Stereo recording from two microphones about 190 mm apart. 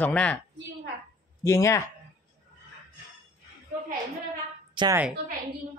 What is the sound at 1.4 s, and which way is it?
Speech, 15° left (ahead or behind).